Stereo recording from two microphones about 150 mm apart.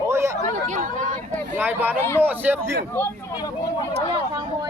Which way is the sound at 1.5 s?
15° right (ahead or behind).